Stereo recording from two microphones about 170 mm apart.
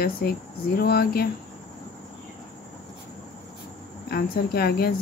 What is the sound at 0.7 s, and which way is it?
Speech, 65° left (ahead or behind).